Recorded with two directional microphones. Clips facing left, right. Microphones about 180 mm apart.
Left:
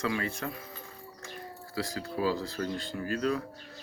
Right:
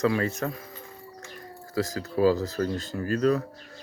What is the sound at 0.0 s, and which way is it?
Speech, 40° right (ahead or behind).